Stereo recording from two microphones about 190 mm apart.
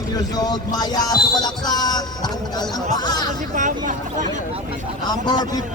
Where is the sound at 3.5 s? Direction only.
40° right (ahead or behind).